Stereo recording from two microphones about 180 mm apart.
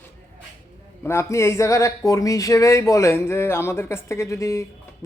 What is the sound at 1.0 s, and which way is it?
Speech, 15° left (ahead or behind).